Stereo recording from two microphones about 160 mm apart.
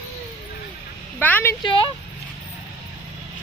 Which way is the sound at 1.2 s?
10° left (ahead or behind).